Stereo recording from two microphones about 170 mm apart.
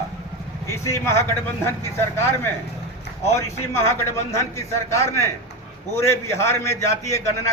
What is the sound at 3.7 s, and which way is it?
A man's voice, 15° left (ahead or behind).